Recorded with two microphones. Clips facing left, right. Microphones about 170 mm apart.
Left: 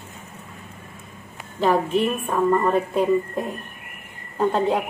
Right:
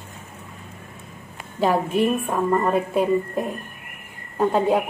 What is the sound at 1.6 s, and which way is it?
A woman's voice, 10° right (ahead or behind).